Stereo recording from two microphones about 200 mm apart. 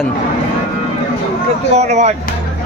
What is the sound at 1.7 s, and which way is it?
Speech, 35° right (ahead or behind).